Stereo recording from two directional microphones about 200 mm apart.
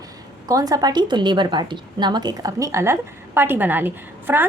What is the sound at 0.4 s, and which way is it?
A woman's voice, 20° right (ahead or behind).